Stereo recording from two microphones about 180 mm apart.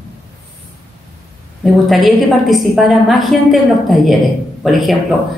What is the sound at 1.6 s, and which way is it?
A woman's voice, centre (ahead or behind).